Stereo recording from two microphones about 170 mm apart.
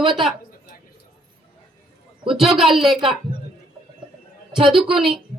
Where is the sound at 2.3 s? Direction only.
Centre (ahead or behind).